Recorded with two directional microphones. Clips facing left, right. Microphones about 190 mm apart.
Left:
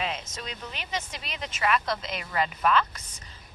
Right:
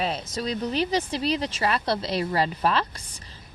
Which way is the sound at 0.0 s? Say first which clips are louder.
Right 6 dB; 35° right (ahead or behind).